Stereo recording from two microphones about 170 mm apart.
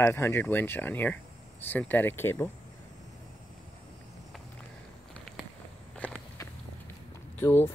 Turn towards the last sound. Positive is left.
turn(degrees=10)  # may be behind; listen again after turning